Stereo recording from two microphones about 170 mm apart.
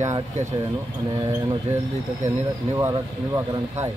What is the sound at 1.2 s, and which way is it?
Speech, 20° right (ahead or behind).